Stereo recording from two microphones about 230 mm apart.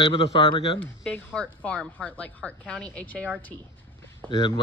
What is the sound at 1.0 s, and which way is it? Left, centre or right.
A woman's voice, centre.